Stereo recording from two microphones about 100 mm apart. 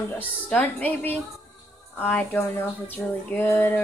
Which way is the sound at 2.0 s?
20° left (ahead or behind).